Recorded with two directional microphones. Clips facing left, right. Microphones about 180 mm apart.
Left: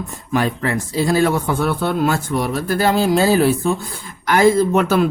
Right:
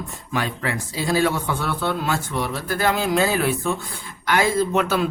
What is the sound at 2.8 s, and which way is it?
Speech, 35° left (ahead or behind).